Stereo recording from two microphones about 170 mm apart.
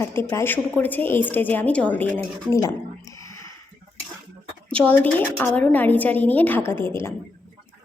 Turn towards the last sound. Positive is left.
turn(degrees=15)  # may be behind; listen again after turning